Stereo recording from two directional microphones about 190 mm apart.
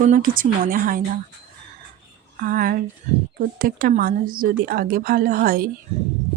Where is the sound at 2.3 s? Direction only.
45° right (ahead or behind).